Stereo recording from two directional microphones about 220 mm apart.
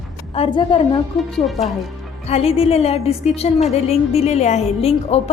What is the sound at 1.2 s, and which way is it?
Speech, centre (ahead or behind).